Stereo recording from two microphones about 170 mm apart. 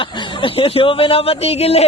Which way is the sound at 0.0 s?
30° left (ahead or behind).